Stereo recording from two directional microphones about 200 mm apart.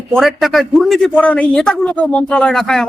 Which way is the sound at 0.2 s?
Centre (ahead or behind).